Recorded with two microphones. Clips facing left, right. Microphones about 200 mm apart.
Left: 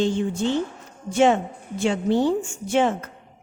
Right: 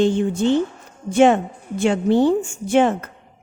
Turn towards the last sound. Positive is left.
turn(degrees=-55)  # may be behind; listen again after turning